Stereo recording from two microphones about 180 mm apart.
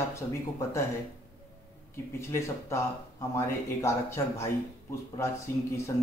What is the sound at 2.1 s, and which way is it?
Speech, 15° left (ahead or behind).